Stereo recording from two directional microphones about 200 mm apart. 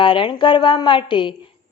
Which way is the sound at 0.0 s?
25° left (ahead or behind).